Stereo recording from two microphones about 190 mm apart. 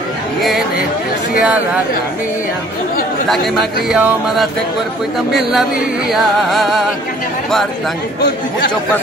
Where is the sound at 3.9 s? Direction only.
5° right (ahead or behind).